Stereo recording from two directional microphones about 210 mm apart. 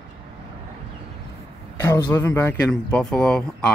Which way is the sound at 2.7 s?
5° left (ahead or behind).